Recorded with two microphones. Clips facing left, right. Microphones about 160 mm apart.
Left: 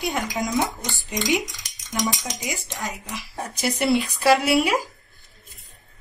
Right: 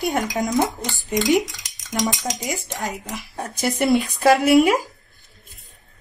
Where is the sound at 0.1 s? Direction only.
45° right (ahead or behind).